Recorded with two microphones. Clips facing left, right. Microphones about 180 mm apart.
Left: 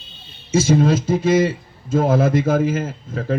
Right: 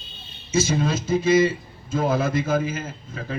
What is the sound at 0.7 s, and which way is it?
Speech, 65° left (ahead or behind).